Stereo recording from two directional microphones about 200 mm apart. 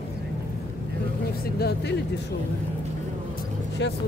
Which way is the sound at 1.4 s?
50° left (ahead or behind).